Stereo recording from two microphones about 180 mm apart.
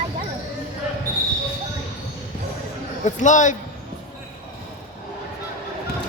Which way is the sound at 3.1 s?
40° left (ahead or behind).